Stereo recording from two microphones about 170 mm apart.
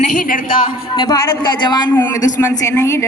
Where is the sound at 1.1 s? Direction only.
20° left (ahead or behind).